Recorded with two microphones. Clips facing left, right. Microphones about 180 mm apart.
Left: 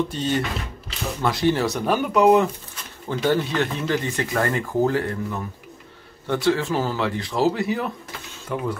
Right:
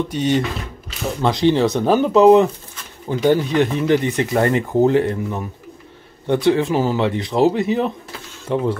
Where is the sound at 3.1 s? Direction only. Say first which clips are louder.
Right 5 dB; 15° right (ahead or behind).